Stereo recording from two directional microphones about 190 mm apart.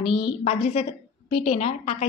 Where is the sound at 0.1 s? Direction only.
30° left (ahead or behind).